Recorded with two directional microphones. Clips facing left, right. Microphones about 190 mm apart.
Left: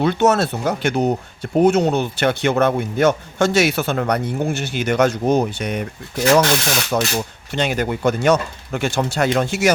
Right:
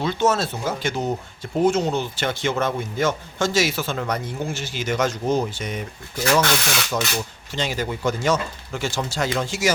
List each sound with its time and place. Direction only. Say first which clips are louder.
0.0 s speech: left 5 dB; 60° left (ahead or behind)